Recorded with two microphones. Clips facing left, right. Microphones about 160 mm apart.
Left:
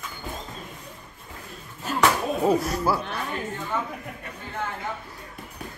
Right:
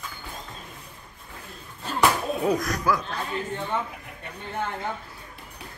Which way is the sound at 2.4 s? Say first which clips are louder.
Left 2 dB; 10° left (ahead or behind).